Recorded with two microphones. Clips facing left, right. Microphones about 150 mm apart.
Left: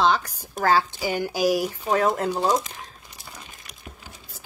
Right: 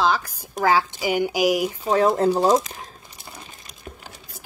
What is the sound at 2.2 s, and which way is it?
Speech, 40° right (ahead or behind).